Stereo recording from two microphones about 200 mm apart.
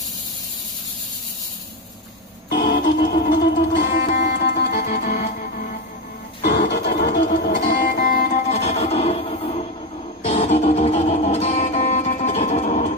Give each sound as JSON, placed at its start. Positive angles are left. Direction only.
{"t": 2.5, "sound": "music", "side_deg": 50}
{"t": 6.4, "sound": "music", "side_deg": 50}